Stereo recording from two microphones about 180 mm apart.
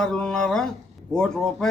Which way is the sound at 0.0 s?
5° left (ahead or behind).